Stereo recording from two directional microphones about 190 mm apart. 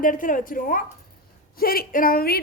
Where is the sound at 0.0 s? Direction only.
45° left (ahead or behind).